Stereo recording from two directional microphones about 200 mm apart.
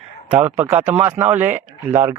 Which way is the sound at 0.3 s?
10° right (ahead or behind).